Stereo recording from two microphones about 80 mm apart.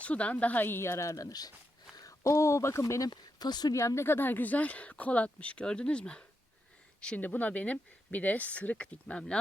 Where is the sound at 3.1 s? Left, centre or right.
Left.